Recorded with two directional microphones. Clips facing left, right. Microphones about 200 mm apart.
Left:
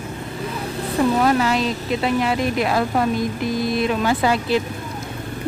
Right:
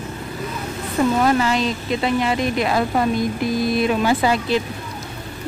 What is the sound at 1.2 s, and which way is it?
A woman's voice, 5° left (ahead or behind).